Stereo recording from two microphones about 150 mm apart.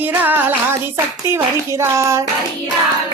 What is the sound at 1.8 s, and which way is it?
Hands, 20° right (ahead or behind).